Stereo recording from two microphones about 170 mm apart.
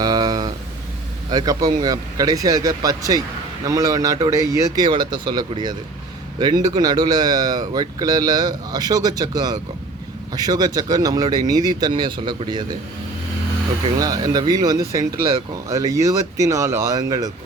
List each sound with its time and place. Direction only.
0.0 s a sound: 25° right (ahead or behind)
1.3 s speech: 25° right (ahead or behind)
13.8 s speech: 25° right (ahead or behind)